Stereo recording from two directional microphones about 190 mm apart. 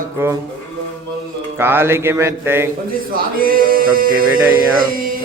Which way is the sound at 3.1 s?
50° right (ahead or behind).